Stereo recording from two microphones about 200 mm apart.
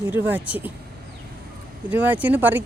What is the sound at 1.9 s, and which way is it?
Speech, 10° right (ahead or behind).